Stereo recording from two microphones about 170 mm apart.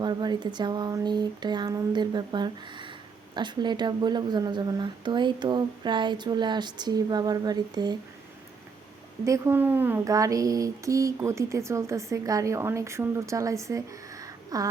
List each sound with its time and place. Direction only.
0.0 s speech: 25° right (ahead or behind)
9.2 s speech: 20° right (ahead or behind)